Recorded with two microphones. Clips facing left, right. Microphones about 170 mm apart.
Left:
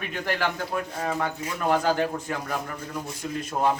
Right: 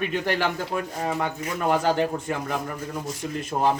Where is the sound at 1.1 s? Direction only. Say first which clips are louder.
Right 1 dB; 5° right (ahead or behind).